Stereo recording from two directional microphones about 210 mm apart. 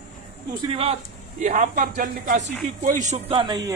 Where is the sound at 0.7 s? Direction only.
25° right (ahead or behind).